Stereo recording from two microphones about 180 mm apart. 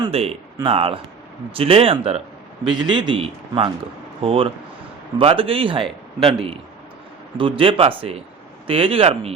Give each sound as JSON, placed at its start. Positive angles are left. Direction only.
{"t": 0.0, "sound": "a man's voice", "side_deg": -35}